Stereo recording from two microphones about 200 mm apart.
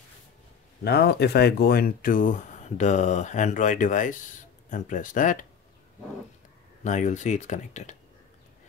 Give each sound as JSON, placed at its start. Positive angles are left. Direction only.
{"t": 0.8, "sound": "speech", "side_deg": 55}
{"t": 6.8, "sound": "speech", "side_deg": 35}